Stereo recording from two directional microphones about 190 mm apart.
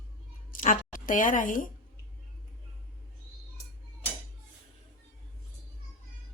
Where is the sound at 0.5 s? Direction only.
45° left (ahead or behind).